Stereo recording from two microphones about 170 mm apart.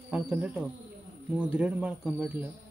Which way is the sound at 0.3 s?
10° right (ahead or behind).